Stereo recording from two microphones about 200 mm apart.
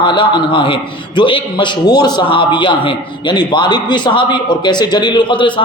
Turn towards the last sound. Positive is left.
turn(degrees=25)  # may be behind; listen again after turning